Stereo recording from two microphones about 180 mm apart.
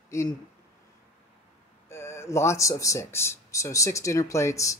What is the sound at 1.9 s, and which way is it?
Speech, 15° left (ahead or behind).